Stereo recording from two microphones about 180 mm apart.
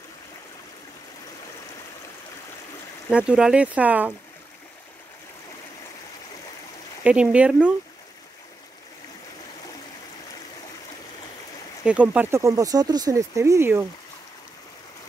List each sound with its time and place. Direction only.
3.1 s speech: 5° right (ahead or behind)
7.0 s speech: 5° right (ahead or behind)
11.8 s speech: 5° right (ahead or behind)